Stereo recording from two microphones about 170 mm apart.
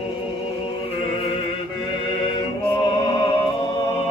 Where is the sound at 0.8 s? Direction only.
35° left (ahead or behind).